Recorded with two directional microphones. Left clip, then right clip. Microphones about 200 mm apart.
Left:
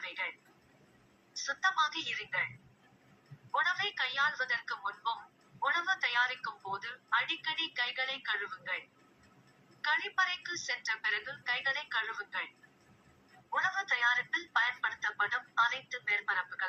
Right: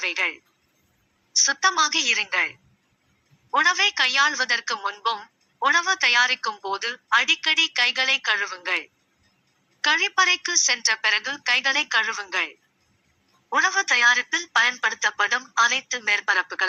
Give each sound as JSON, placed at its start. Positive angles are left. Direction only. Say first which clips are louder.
{"t": 0.0, "sound": "a woman's voice", "louder": "right 14 dB", "side_deg": -45}
{"t": 3.5, "sound": "a woman's voice", "louder": "right 12 dB", "side_deg": -45}
{"t": 9.8, "sound": "a woman's voice", "louder": "right 12 dB", "side_deg": -45}
{"t": 13.5, "sound": "a woman's voice", "louder": "right 12 dB", "side_deg": -45}